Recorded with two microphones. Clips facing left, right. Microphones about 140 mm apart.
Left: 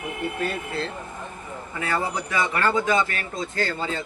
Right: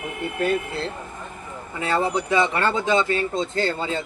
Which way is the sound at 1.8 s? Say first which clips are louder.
Right 4 dB; 25° right (ahead or behind).